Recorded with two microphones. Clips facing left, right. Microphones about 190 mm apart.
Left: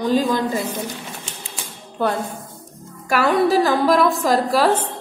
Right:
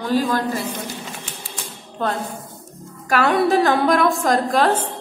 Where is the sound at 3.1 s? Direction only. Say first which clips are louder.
Even; centre (ahead or behind).